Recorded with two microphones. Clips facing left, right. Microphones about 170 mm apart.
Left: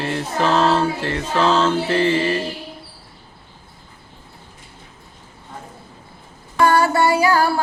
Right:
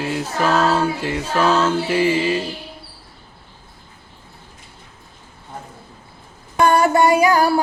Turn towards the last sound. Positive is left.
turn(degrees=-15)  # may be behind; listen again after turning